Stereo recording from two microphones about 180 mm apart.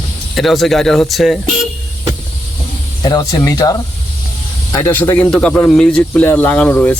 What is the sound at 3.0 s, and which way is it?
A man's voice, 20° left (ahead or behind).